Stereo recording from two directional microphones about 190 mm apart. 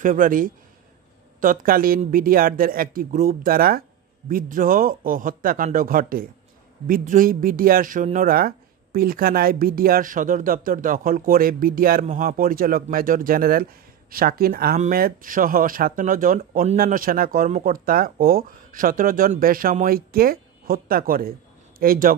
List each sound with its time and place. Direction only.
0.0 s a man's voice: 45° right (ahead or behind)